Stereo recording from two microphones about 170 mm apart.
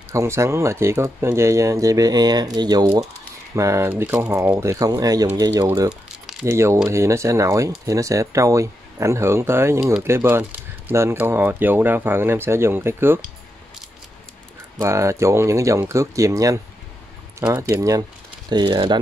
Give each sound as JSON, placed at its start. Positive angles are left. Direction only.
{"t": 0.1, "sound": "speech", "side_deg": -15}
{"t": 5.9, "sound": "crumpling", "side_deg": 0}
{"t": 6.4, "sound": "speech", "side_deg": -15}
{"t": 14.8, "sound": "speech", "side_deg": -15}